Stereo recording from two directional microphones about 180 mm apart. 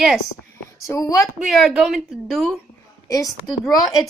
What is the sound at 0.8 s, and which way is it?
Speech, 15° left (ahead or behind).